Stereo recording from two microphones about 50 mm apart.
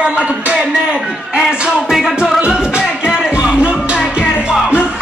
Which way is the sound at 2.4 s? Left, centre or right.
Centre.